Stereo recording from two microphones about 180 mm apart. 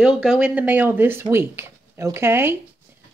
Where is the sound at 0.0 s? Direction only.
5° right (ahead or behind).